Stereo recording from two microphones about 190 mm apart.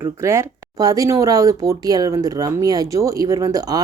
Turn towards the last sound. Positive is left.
turn(degrees=-20)  # may be behind; listen again after turning